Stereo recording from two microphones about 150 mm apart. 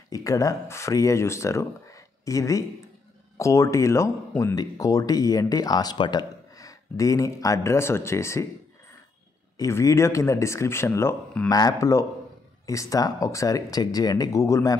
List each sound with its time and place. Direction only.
0.1 s speech: 25° left (ahead or behind)
9.6 s speech: 20° left (ahead or behind)